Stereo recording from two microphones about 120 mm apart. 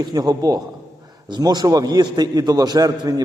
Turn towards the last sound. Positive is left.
turn(degrees=-35)  # may be behind; listen again after turning